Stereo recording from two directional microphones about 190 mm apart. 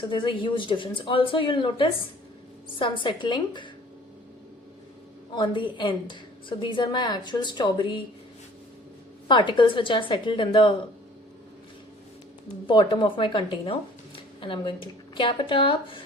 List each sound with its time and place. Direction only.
0.1 s a woman's voice: 25° left (ahead or behind)
5.3 s a woman's voice: 25° left (ahead or behind)
9.2 s a woman's voice: 25° left (ahead or behind)
12.6 s a woman's voice: 25° left (ahead or behind)